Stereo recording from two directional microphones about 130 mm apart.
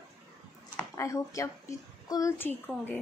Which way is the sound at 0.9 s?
25° left (ahead or behind).